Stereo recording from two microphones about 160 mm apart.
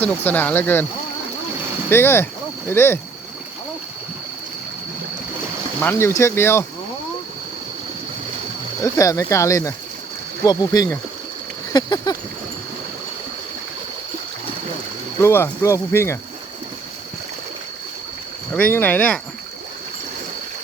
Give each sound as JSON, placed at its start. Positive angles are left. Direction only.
{"t": 0.0, "sound": "speech", "side_deg": 10}
{"t": 1.9, "sound": "speech", "side_deg": 15}
{"t": 5.8, "sound": "speech", "side_deg": 15}
{"t": 8.8, "sound": "speech", "side_deg": 20}
{"t": 11.7, "sound": "a sound", "side_deg": 25}
{"t": 15.2, "sound": "speech", "side_deg": 15}
{"t": 18.5, "sound": "speech", "side_deg": 10}